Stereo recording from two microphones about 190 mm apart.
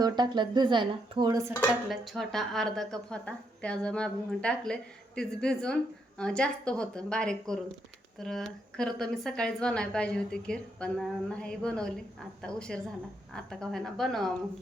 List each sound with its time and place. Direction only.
0.0 s speech: 20° right (ahead or behind)
1.9 s a woman's voice: centre (ahead or behind)